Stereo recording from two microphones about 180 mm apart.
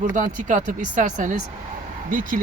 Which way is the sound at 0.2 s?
45° right (ahead or behind).